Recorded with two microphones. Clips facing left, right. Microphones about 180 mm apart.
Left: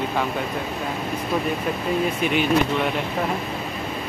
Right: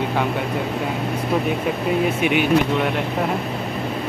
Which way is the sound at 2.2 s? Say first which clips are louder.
Right 3 dB; 65° right (ahead or behind).